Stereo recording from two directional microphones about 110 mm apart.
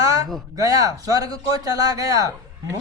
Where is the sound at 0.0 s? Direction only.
30° right (ahead or behind).